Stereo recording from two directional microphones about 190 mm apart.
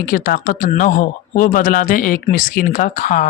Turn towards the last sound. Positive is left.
turn(degrees=40)  # may be behind; listen again after turning